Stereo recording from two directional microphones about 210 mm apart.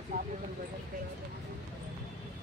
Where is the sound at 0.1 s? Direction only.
40° right (ahead or behind).